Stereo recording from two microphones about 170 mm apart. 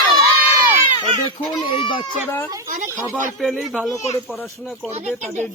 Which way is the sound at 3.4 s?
Centre (ahead or behind).